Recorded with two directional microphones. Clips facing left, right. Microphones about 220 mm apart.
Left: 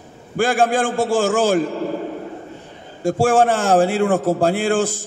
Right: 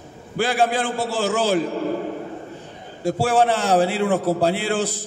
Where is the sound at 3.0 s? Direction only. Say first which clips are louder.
Left 3 dB; 50° left (ahead or behind).